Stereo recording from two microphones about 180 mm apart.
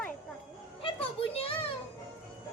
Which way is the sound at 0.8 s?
30° left (ahead or behind).